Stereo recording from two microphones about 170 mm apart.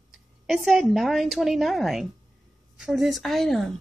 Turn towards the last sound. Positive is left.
turn(degrees=0)  # may be behind; listen again after turning